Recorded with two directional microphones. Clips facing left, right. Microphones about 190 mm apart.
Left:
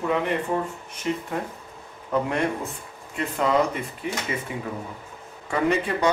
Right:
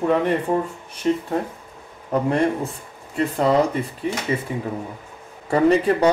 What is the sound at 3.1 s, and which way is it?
Speech, 35° right (ahead or behind).